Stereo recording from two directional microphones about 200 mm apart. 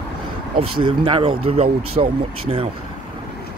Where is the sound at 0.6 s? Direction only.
25° right (ahead or behind).